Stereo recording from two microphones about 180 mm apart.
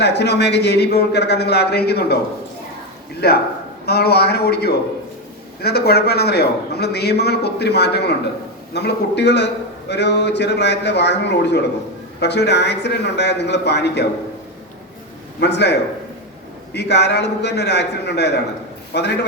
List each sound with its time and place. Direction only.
0.0 s speech: 70° left (ahead or behind)
3.2 s a man's voice: 65° left (ahead or behind)
15.4 s speech: 70° left (ahead or behind)